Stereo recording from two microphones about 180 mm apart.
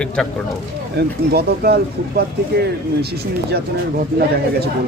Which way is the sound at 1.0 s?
60° right (ahead or behind).